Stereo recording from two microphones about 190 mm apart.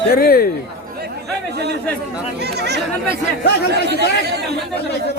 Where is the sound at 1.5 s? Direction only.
60° right (ahead or behind).